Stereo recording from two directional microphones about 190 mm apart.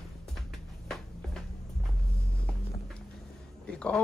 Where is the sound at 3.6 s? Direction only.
5° left (ahead or behind).